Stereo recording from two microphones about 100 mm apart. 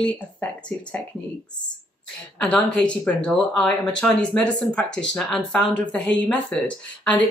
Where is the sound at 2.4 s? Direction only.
5° left (ahead or behind).